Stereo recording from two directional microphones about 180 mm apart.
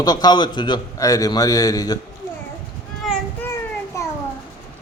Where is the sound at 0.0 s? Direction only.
20° left (ahead or behind).